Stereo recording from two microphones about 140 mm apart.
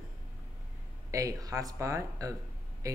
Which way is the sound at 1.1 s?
25° right (ahead or behind).